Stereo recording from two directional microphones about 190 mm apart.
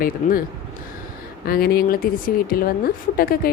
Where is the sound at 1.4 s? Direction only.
50° left (ahead or behind).